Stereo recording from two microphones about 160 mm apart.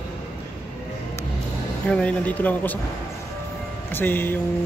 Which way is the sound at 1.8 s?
10° left (ahead or behind).